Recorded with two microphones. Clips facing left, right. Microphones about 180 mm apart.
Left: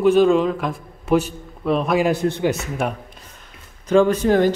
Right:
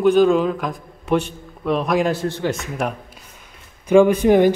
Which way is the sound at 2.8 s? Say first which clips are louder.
Even; centre (ahead or behind).